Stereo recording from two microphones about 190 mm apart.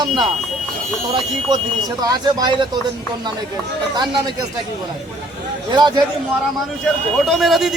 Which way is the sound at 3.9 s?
20° right (ahead or behind).